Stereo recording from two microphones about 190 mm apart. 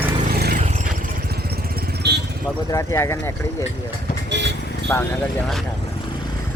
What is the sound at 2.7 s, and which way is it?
Speech, 15° left (ahead or behind).